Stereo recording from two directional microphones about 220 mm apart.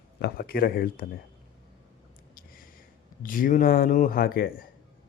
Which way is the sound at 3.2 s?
40° left (ahead or behind).